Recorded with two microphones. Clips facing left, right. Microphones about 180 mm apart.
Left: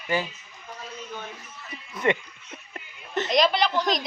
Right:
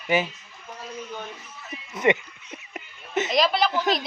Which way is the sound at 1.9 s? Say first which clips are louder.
Right 3 dB; 20° right (ahead or behind).